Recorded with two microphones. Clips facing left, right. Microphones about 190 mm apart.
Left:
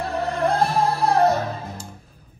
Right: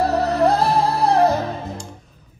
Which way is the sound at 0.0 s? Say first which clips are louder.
Right 6 dB; 35° right (ahead or behind).